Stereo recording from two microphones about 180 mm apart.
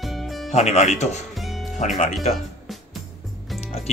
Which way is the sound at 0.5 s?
40° left (ahead or behind).